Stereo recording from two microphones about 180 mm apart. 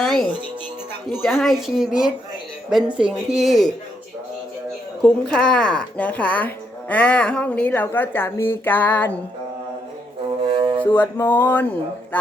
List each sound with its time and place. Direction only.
0.0 s music: centre (ahead or behind)
1.2 s speech: centre (ahead or behind)
5.0 s a woman's voice: 5° left (ahead or behind)
10.5 s music: 30° right (ahead or behind)
10.9 s a woman's voice: 10° left (ahead or behind)